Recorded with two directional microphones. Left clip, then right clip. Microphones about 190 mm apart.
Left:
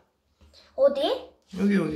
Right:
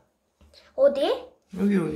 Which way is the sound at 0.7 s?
25° right (ahead or behind).